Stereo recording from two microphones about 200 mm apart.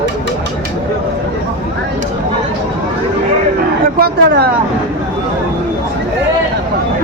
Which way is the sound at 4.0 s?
50° right (ahead or behind).